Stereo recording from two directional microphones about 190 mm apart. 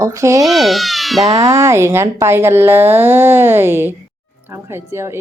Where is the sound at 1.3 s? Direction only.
20° right (ahead or behind).